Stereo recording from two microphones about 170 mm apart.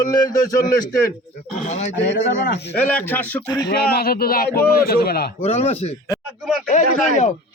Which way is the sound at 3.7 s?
65° left (ahead or behind).